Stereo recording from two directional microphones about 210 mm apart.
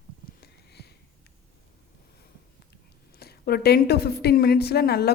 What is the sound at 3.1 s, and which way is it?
A woman's voice, 50° left (ahead or behind).